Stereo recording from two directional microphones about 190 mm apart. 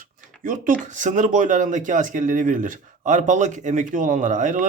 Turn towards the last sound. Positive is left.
turn(degrees=-40)  # may be behind; listen again after turning